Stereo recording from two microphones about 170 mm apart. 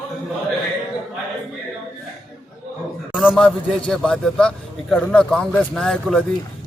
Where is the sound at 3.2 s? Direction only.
5° left (ahead or behind).